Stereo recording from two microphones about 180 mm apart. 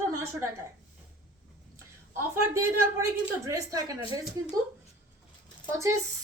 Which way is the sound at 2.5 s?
15° right (ahead or behind).